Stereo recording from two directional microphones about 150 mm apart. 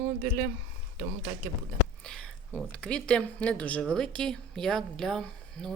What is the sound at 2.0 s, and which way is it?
Speech, 5° left (ahead or behind).